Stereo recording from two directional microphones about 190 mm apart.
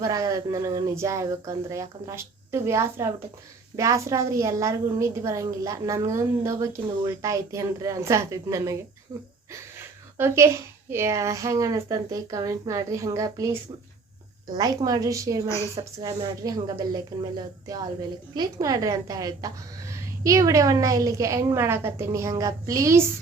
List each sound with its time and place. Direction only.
0.0 s a woman's voice: 20° right (ahead or behind)